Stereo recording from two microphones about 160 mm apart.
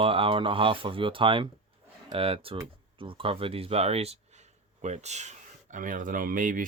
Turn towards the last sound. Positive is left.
turn(degrees=-55)  # may be behind; listen again after turning